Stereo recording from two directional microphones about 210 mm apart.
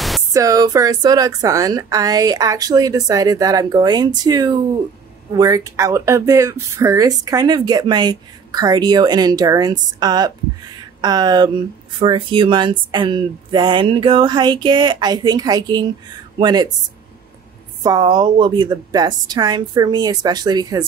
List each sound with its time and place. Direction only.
0.3 s a woman's voice: 15° right (ahead or behind)
17.8 s speech: 20° right (ahead or behind)